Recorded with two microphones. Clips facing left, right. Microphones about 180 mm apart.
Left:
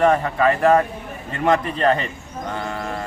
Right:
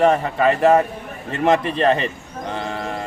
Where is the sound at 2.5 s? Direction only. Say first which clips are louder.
Right 1 dB; 20° right (ahead or behind).